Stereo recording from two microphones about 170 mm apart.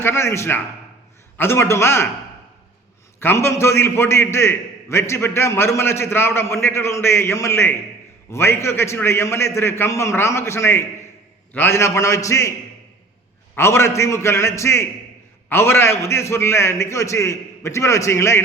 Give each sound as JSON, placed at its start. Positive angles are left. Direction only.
{"t": 0.0, "sound": "a man's voice", "side_deg": 15}
{"t": 3.2, "sound": "a man's voice", "side_deg": 15}
{"t": 13.6, "sound": "a man's voice", "side_deg": 15}